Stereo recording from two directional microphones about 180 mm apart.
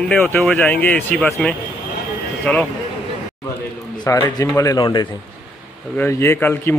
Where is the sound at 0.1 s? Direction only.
5° left (ahead or behind).